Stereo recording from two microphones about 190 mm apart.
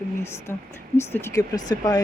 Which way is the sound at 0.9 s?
15° left (ahead or behind).